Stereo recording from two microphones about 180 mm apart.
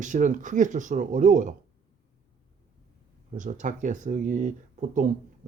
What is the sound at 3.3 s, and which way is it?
Speech, 45° right (ahead or behind).